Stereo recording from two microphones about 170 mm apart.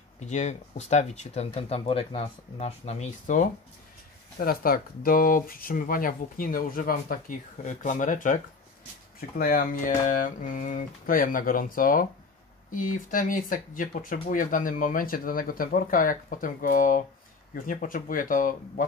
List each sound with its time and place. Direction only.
0.2 s speech: 40° left (ahead or behind)
4.4 s speech: 60° left (ahead or behind)
9.4 s speech: 60° left (ahead or behind)